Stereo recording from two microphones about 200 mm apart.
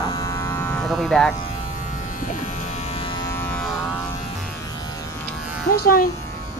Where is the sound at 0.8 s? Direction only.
Centre (ahead or behind).